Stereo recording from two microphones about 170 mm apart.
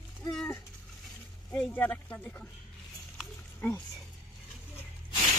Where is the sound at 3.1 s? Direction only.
10° left (ahead or behind).